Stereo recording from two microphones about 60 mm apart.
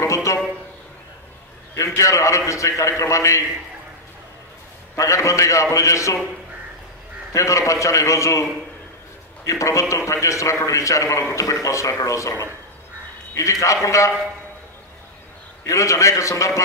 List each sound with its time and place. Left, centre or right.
0.0 s a sound: left
1.8 s a man's voice: left
4.9 s a man's voice: left
7.3 s a man's voice: left
15.6 s a man's voice: left